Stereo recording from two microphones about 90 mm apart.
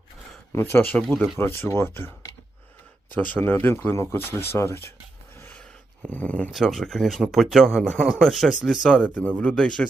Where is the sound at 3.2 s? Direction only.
20° left (ahead or behind).